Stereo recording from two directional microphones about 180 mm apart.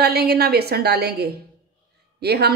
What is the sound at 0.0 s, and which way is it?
A woman's voice, 60° right (ahead or behind).